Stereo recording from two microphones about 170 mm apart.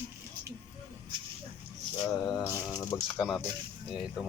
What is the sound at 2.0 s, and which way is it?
Speech, 20° left (ahead or behind).